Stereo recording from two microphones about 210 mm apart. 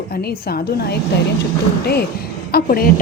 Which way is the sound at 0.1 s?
45° left (ahead or behind).